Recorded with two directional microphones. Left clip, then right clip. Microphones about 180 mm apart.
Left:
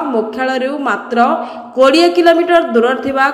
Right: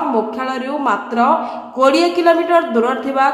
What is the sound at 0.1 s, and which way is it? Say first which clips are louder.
A woman's voice: left 3 dB; 10° left (ahead or behind).